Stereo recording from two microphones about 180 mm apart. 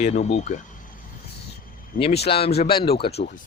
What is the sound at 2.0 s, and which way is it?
Speech, 30° left (ahead or behind).